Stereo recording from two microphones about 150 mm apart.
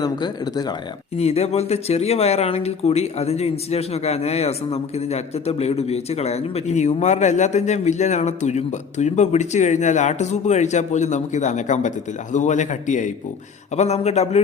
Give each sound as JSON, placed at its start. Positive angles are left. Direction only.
{"t": 0.0, "sound": "speech", "side_deg": 25}
{"t": 1.1, "sound": "speech", "side_deg": 45}